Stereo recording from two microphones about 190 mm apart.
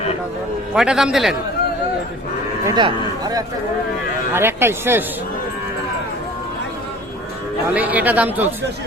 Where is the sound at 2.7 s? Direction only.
20° right (ahead or behind).